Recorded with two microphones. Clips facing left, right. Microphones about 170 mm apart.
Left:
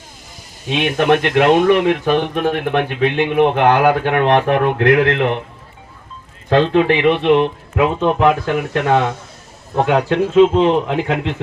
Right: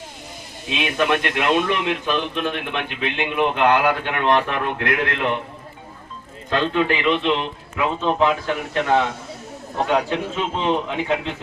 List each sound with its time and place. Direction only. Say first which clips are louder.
0.7 s speech: left 6 dB; 60° left (ahead or behind)
6.5 s speech: left 7 dB; 60° left (ahead or behind)